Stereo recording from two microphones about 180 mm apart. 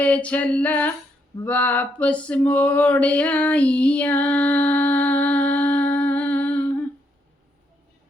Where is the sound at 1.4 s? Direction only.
10° left (ahead or behind).